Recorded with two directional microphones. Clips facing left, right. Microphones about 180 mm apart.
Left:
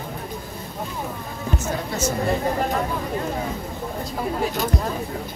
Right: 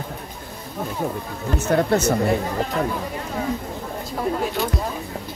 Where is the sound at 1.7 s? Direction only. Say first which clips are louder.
Right 10 dB; 60° right (ahead or behind).